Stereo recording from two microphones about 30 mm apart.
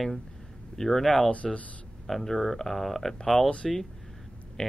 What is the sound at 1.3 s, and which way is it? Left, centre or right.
Speech, left.